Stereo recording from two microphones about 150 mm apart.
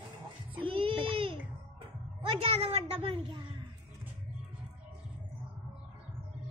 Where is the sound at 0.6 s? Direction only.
35° right (ahead or behind).